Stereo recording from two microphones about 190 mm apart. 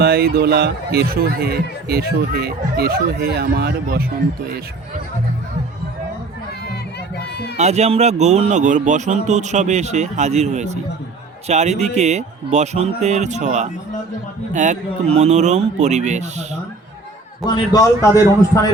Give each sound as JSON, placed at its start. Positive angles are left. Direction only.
{"t": 0.0, "sound": "speech", "side_deg": -55}
{"t": 7.5, "sound": "a man's voice", "side_deg": -35}
{"t": 17.4, "sound": "a man's voice", "side_deg": 20}